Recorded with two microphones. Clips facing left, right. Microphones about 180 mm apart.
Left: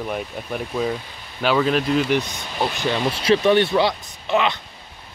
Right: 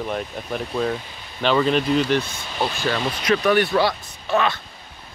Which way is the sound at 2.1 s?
15° left (ahead or behind).